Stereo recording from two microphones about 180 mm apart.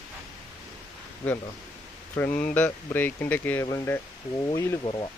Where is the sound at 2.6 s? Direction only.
10° left (ahead or behind).